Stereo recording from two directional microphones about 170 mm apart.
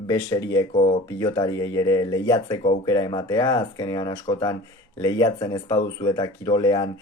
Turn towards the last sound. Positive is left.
turn(degrees=25)  # may be behind; listen again after turning